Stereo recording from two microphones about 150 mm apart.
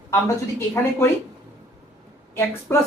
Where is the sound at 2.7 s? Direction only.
15° left (ahead or behind).